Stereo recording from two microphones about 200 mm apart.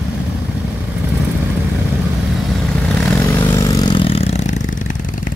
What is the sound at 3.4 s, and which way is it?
Vehicle, 15° left (ahead or behind).